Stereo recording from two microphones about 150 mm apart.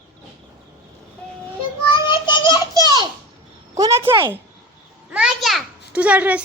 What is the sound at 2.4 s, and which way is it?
Children playing, 25° right (ahead or behind).